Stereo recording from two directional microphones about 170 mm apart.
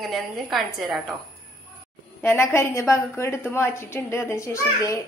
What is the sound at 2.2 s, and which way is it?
A woman's voice, 15° left (ahead or behind).